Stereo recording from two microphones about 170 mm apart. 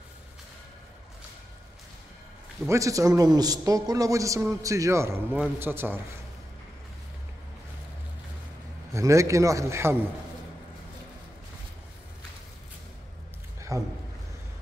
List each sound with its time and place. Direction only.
2.7 s a man's voice: 20° right (ahead or behind)
8.9 s a man's voice: 15° right (ahead or behind)
13.6 s a sound: 20° right (ahead or behind)